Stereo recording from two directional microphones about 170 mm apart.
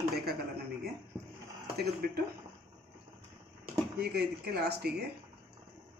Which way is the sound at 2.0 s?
60° right (ahead or behind).